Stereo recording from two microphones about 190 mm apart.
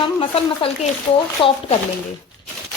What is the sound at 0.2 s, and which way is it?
A woman's voice, 30° left (ahead or behind).